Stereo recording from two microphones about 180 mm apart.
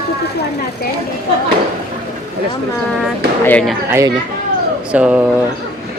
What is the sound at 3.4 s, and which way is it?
Speech, 10° left (ahead or behind).